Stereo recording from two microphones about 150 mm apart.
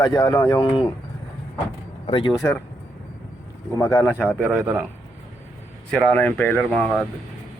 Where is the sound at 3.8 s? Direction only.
15° left (ahead or behind).